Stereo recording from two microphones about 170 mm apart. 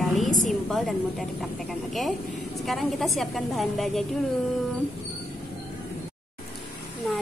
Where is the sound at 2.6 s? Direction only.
Centre (ahead or behind).